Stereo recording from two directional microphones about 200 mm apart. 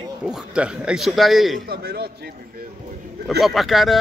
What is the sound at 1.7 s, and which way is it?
Speech, 50° right (ahead or behind).